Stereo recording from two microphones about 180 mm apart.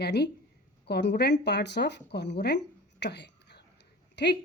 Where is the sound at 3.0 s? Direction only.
70° left (ahead or behind).